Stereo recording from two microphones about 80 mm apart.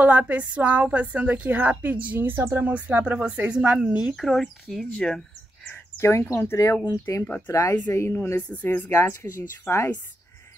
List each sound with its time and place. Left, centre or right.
0.0 s a woman's voice: centre
4.2 s speech: centre
5.9 s speech: left
8.6 s a woman's voice: left